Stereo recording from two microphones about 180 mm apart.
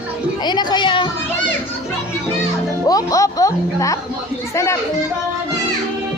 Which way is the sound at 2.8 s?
20° left (ahead or behind).